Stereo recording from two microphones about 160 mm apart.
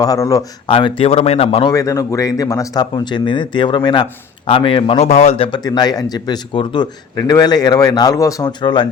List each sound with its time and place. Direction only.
0.0 s speech: 20° left (ahead or behind)
0.7 s speech: 30° left (ahead or behind)
1.7 s speech: 20° left (ahead or behind); by 5.5 s 40° left (ahead or behind)
5.5 s speech: 25° left (ahead or behind)